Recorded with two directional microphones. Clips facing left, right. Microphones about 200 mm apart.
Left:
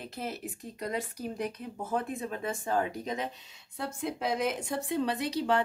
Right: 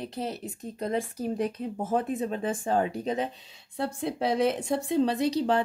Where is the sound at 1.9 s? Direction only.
30° right (ahead or behind).